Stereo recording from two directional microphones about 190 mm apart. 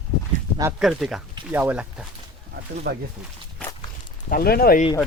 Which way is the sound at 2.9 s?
60° right (ahead or behind).